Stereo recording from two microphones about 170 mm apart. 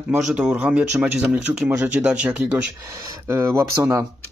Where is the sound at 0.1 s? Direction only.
5° right (ahead or behind).